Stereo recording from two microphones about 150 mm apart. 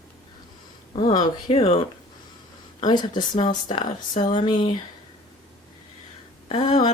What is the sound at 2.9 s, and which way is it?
A woman's voice, 30° left (ahead or behind).